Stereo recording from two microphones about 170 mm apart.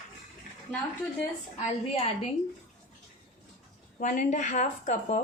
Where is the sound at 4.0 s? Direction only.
50° left (ahead or behind).